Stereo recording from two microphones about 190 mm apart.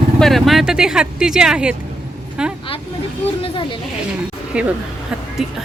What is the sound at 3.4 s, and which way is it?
Speech, 25° left (ahead or behind).